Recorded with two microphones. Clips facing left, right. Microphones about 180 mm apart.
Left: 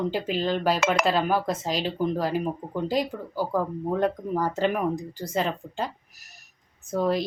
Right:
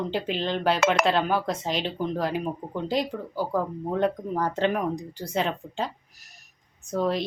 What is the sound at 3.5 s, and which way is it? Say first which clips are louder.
A woman's voice: left 1 dB; centre (ahead or behind).